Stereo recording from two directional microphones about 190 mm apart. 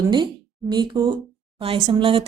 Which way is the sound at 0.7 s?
25° right (ahead or behind).